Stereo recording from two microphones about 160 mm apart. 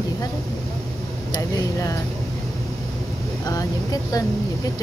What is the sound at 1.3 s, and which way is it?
Speech, 20° left (ahead or behind).